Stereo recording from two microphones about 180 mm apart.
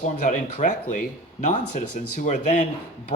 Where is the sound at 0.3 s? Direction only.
45° left (ahead or behind).